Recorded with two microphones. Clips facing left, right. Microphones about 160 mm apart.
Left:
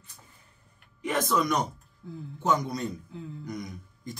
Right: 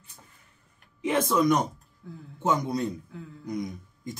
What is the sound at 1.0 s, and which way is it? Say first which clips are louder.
Speech: right 3 dB; 25° right (ahead or behind).